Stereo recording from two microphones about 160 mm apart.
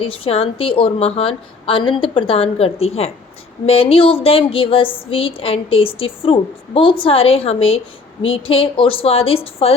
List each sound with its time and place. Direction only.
0.0 s speech: 35° left (ahead or behind)